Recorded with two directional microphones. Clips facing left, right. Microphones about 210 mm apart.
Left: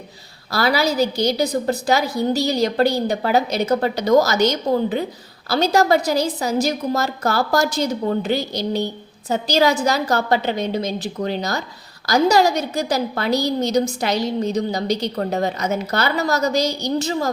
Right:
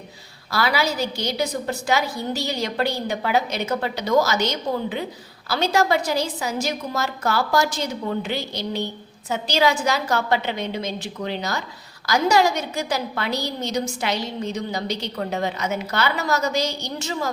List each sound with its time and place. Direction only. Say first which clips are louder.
0.5 s a woman's voice: left 4 dB; 40° left (ahead or behind)